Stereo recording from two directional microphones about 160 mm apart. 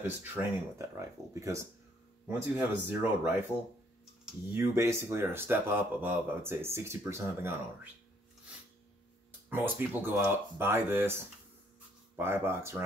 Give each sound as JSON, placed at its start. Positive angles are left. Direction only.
{"t": 0.0, "sound": "speech", "side_deg": -15}
{"t": 4.5, "sound": "speech", "side_deg": -15}
{"t": 9.5, "sound": "speech", "side_deg": -15}
{"t": 12.2, "sound": "speech", "side_deg": -15}